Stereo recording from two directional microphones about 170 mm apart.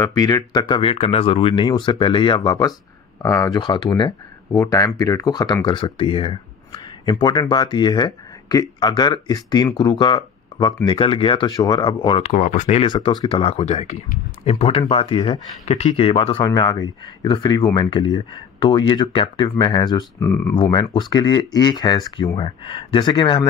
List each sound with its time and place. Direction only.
0.0 s speech: 20° left (ahead or behind)
12.3 s speech: 45° left (ahead or behind)
12.8 s speech: 25° left (ahead or behind)
20.2 s speech: 15° left (ahead or behind)
20.7 s speech: 25° left (ahead or behind)